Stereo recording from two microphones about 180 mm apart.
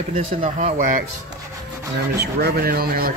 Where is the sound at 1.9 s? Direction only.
60° right (ahead or behind).